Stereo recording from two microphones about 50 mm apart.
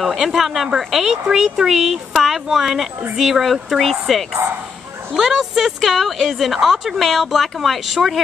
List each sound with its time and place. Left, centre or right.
0.0 s speech: centre